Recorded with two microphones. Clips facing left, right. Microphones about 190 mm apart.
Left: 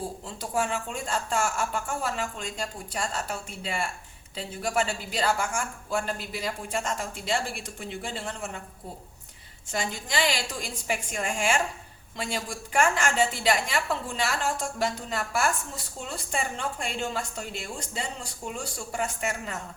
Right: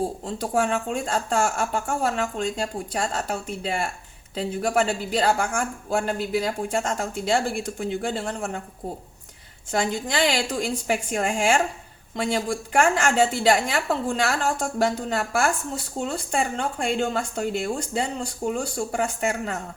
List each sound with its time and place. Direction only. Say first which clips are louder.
0.3 s a woman's voice: right 4 dB; 55° right (ahead or behind)
4.4 s a woman's voice: right 6 dB; 50° right (ahead or behind)
9.7 s a woman's voice: right 6 dB; 50° right (ahead or behind)